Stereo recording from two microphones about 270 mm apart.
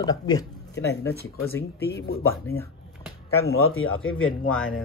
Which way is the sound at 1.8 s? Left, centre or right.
Left.